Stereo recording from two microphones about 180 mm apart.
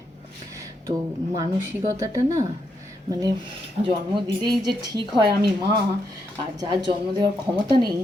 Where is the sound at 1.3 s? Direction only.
15° right (ahead or behind).